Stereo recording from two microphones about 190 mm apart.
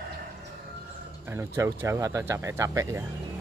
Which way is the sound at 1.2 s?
15° right (ahead or behind).